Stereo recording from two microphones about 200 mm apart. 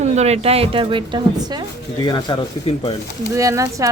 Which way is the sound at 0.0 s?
35° right (ahead or behind).